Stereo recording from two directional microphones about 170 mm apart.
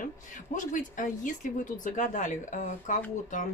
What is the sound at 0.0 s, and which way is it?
Speech, 50° left (ahead or behind).